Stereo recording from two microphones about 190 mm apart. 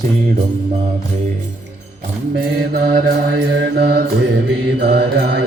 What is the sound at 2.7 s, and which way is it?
Mantra, 50° right (ahead or behind).